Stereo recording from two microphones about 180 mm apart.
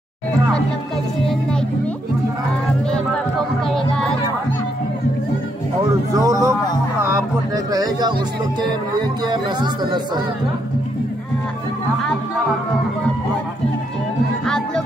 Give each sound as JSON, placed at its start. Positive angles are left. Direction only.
{"t": 2.9, "sound": "music", "side_deg": 0}
{"t": 6.1, "sound": "a sound", "side_deg": -20}
{"t": 7.0, "sound": "music", "side_deg": -15}
{"t": 9.3, "sound": "speech", "side_deg": -25}